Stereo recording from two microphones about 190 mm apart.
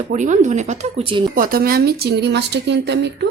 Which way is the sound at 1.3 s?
50° right (ahead or behind).